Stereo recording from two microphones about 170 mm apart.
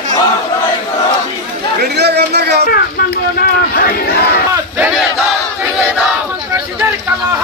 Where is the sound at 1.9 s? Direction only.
75° right (ahead or behind).